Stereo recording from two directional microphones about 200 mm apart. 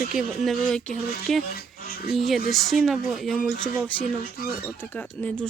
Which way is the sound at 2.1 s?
Centre (ahead or behind).